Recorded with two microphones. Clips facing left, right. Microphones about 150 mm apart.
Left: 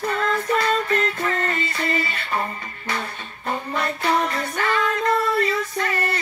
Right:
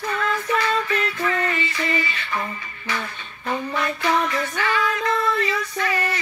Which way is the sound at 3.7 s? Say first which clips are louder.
Left 1 dB; 35° left (ahead or behind).